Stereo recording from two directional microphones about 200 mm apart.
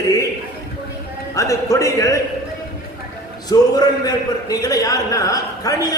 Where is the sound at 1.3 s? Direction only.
15° left (ahead or behind).